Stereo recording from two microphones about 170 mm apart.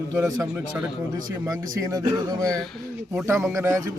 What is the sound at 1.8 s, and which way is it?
Speech, 20° right (ahead or behind).